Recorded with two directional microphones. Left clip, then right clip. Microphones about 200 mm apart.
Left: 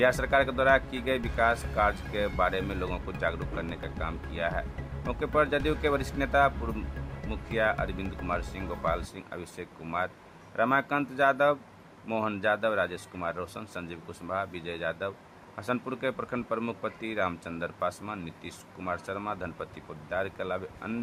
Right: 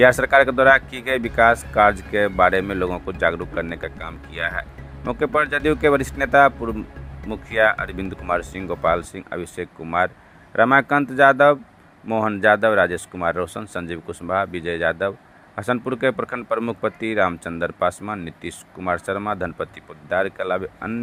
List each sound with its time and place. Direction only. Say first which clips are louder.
0.0 s speech: right 11 dB; 30° right (ahead or behind)
12.0 s speech: right 9 dB; 15° right (ahead or behind)
12.4 s speech: right 13 dB; 30° right (ahead or behind)